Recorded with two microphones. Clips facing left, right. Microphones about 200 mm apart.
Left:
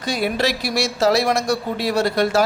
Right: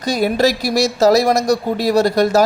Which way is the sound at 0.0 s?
40° right (ahead or behind).